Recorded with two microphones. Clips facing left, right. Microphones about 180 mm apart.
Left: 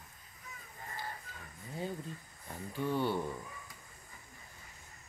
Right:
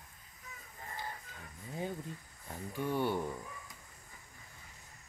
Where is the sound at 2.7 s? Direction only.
15° right (ahead or behind).